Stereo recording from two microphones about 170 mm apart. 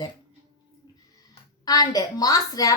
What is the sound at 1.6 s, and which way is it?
Speech, 20° left (ahead or behind).